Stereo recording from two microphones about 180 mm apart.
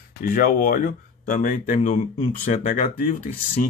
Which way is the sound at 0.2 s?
50° left (ahead or behind).